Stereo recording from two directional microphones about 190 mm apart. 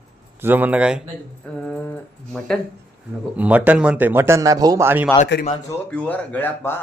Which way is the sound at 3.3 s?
10° right (ahead or behind).